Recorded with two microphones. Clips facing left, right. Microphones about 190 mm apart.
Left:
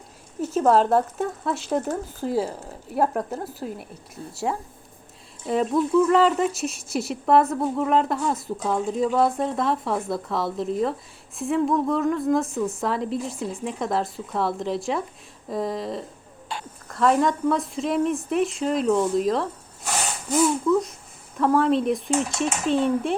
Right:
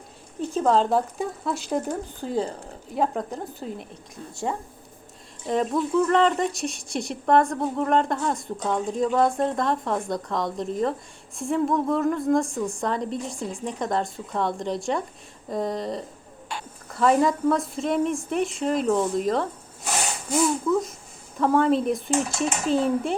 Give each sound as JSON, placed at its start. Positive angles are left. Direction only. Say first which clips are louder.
{"t": 0.5, "sound": "speech", "louder": "left 2 dB", "side_deg": 5}
{"t": 4.2, "sound": "a woman's voice", "louder": "left 2 dB", "side_deg": 35}
{"t": 5.5, "sound": "speech", "louder": "left 2 dB", "side_deg": 5}